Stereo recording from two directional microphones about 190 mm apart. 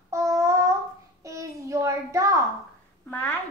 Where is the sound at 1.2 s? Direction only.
15° right (ahead or behind).